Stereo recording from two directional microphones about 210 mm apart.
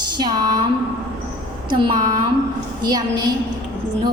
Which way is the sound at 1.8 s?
25° right (ahead or behind).